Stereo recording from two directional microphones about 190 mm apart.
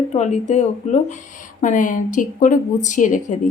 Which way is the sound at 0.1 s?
35° left (ahead or behind).